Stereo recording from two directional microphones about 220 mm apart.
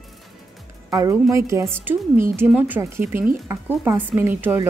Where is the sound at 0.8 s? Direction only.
15° right (ahead or behind).